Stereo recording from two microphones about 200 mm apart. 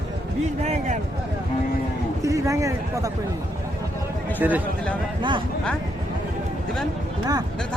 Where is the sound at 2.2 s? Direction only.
15° right (ahead or behind).